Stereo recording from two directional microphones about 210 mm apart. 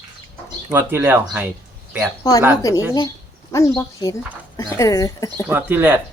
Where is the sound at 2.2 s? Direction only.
15° left (ahead or behind).